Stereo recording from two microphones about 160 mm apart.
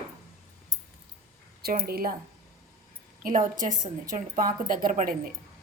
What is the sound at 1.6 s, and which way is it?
Speech, 75° right (ahead or behind).